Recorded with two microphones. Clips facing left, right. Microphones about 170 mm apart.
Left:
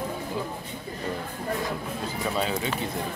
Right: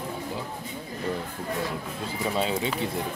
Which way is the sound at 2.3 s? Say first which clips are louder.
Right 2 dB; 25° right (ahead or behind).